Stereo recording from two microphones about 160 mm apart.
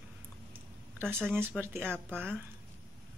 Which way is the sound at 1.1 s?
10° right (ahead or behind).